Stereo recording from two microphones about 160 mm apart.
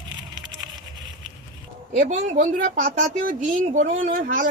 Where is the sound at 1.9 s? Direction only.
50° right (ahead or behind).